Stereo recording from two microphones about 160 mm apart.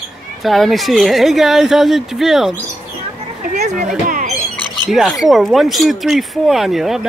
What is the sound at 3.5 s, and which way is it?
Speech, 50° right (ahead or behind).